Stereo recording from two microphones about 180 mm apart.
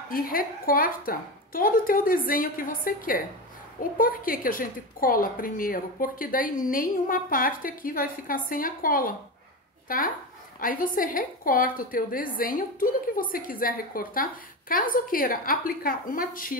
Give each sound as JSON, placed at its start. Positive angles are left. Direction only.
{"t": 0.1, "sound": "a woman's voice", "side_deg": 50}